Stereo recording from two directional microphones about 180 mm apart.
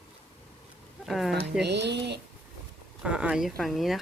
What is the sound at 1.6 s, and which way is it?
Speech, 70° right (ahead or behind).